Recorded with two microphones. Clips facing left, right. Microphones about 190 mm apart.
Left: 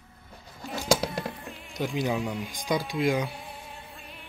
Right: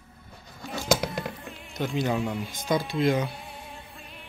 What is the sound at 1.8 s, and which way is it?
Speech, 15° left (ahead or behind).